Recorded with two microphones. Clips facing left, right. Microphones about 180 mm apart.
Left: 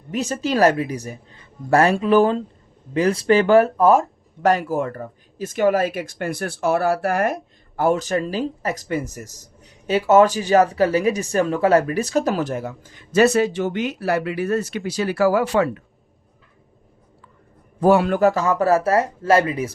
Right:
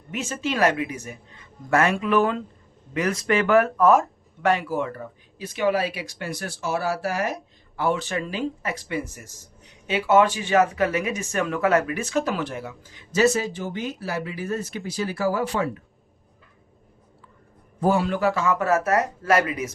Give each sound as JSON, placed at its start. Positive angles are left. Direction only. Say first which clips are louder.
{"t": 0.1, "sound": "speech", "louder": "left 5 dB", "side_deg": 35}
{"t": 4.4, "sound": "speech", "louder": "left 4 dB", "side_deg": 45}
{"t": 17.7, "sound": "speech", "louder": "left 6 dB", "side_deg": 70}